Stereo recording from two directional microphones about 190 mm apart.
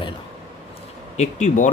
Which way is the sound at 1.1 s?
40° left (ahead or behind).